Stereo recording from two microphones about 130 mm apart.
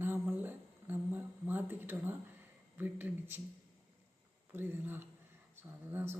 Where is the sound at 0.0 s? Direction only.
15° right (ahead or behind).